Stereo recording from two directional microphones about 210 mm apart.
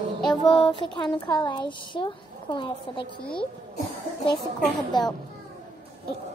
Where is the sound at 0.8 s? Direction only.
25° left (ahead or behind).